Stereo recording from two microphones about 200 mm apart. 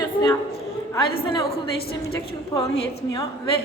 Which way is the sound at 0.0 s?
20° left (ahead or behind).